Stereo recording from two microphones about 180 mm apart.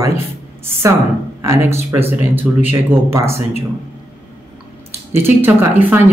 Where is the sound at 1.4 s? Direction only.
15° right (ahead or behind).